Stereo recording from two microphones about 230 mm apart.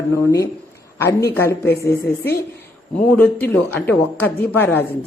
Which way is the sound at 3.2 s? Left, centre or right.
Centre.